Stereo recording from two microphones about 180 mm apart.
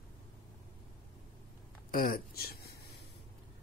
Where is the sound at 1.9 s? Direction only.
55° left (ahead or behind).